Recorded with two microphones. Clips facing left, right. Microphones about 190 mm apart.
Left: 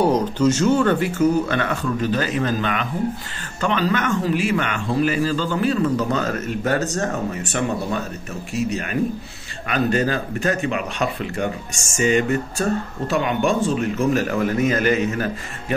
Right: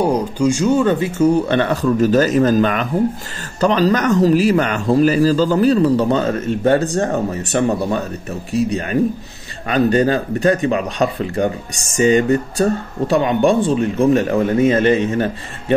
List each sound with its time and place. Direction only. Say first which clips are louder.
0.1 s a man's voice: right 1 dB; 10° right (ahead or behind); by 15.3 s 30° right (ahead or behind)